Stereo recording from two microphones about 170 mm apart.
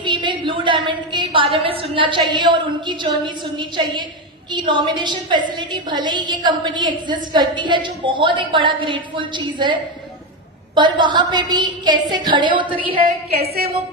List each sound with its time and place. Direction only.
0.0 s a woman's voice: 30° right (ahead or behind)
13.0 s a woman's voice: 65° right (ahead or behind)